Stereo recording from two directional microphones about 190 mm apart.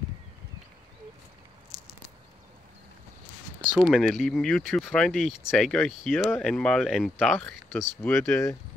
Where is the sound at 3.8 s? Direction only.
Centre (ahead or behind).